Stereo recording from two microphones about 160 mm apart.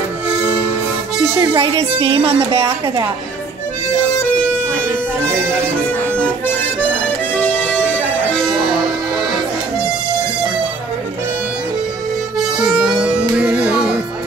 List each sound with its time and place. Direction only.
1.1 s music: 15° right (ahead or behind)
1.4 s a woman's voice: 30° right (ahead or behind)
5.2 s music: 5° left (ahead or behind)
12.4 s music: 5° right (ahead or behind)